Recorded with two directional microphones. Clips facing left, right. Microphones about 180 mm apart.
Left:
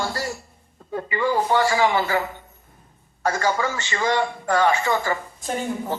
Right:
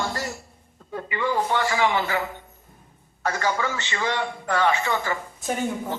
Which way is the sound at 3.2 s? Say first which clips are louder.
Left 3 dB; 40° left (ahead or behind).